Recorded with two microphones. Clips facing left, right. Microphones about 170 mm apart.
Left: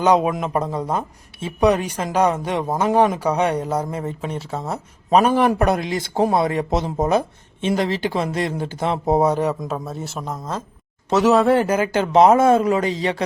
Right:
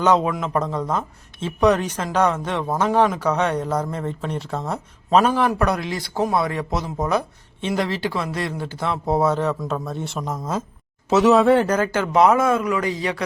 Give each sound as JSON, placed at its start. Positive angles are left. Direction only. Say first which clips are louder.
{"t": 0.0, "sound": "speech", "louder": "left 2 dB", "side_deg": 15}
{"t": 5.1, "sound": "a man's voice", "louder": "left 2 dB", "side_deg": 20}
{"t": 11.9, "sound": "a man's voice", "louder": "left 4 dB", "side_deg": 25}